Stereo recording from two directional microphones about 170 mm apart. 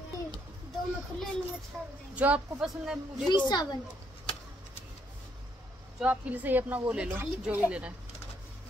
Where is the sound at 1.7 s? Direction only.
5° left (ahead or behind).